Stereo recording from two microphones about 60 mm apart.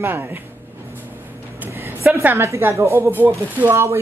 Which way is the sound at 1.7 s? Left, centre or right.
Right.